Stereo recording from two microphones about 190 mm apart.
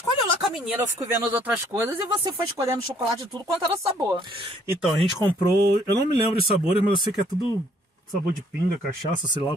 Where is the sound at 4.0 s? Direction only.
25° right (ahead or behind).